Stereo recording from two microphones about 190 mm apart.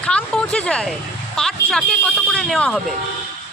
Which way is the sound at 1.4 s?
Centre (ahead or behind).